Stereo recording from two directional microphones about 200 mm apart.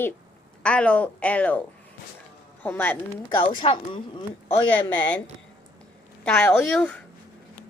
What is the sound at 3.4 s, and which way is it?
Speech, 25° left (ahead or behind).